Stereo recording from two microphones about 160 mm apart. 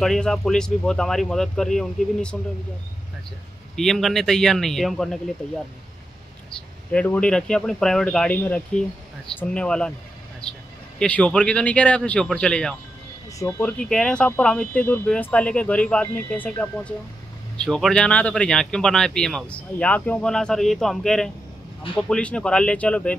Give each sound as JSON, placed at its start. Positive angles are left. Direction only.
{"t": 0.0, "sound": "speech", "side_deg": 5}
{"t": 3.7, "sound": "speech", "side_deg": 5}
{"t": 6.5, "sound": "speech", "side_deg": 10}
{"t": 10.4, "sound": "a sound", "side_deg": 5}
{"t": 11.0, "sound": "speech", "side_deg": 5}